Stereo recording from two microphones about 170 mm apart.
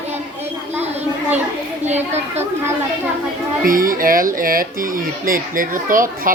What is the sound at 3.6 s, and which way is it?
Speech, 55° right (ahead or behind).